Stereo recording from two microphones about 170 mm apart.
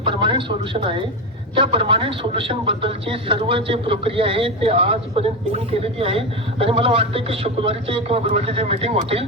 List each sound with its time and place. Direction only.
0.0 s a man's voice: 30° right (ahead or behind)